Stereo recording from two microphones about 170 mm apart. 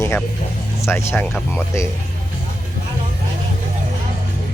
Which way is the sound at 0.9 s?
15° left (ahead or behind).